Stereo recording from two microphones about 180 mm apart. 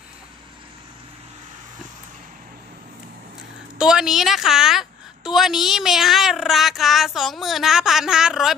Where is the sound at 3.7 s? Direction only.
5° right (ahead or behind).